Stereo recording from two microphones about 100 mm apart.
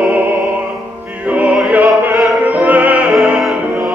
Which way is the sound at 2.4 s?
15° right (ahead or behind).